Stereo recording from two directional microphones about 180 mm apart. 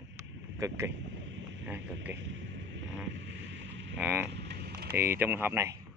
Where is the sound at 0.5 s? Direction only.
15° right (ahead or behind).